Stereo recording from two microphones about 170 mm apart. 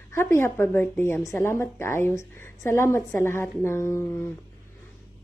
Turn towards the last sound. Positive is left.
turn(degrees=15)  # may be behind; listen again after turning